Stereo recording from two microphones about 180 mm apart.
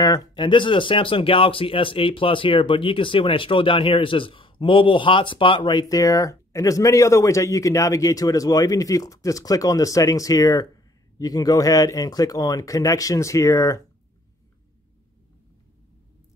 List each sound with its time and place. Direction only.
0.0 s speech: 20° left (ahead or behind)